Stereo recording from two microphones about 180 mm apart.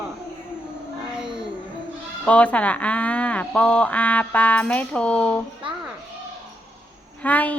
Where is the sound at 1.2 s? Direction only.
25° right (ahead or behind).